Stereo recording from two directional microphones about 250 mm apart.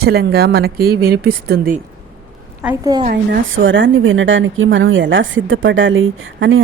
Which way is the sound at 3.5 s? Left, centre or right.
Right.